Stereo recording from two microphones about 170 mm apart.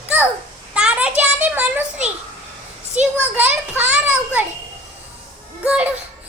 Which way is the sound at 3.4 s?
10° right (ahead or behind).